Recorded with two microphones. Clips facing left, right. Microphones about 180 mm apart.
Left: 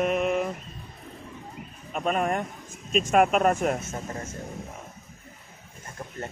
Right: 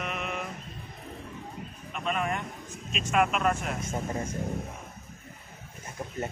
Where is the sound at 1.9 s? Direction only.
45° left (ahead or behind).